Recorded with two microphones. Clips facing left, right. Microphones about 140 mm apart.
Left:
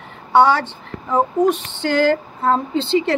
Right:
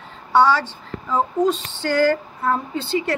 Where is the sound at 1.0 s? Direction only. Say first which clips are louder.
Left 3 dB; 20° left (ahead or behind).